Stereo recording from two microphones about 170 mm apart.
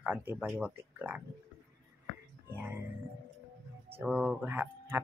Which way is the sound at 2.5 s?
15° right (ahead or behind).